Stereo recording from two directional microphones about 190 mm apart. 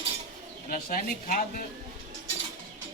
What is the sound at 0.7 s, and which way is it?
Speech, 50° left (ahead or behind).